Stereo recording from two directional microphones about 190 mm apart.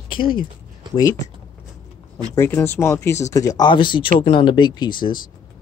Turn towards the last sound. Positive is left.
turn(degrees=25)  # may be behind; listen again after turning